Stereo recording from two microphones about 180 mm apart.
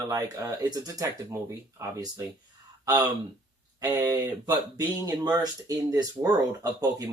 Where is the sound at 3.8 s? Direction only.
20° right (ahead or behind).